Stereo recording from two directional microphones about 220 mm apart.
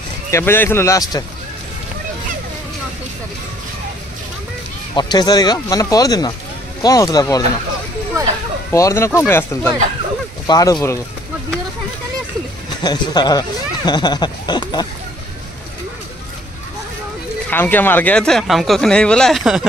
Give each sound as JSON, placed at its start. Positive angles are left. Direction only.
{"t": 0.3, "sound": "speech", "side_deg": 10}
{"t": 4.9, "sound": "speech", "side_deg": 20}
{"t": 8.7, "sound": "speech", "side_deg": 15}
{"t": 12.8, "sound": "speech", "side_deg": 20}
{"t": 17.5, "sound": "speech", "side_deg": 10}